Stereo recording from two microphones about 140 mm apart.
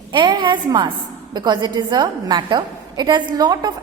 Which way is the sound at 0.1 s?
35° right (ahead or behind).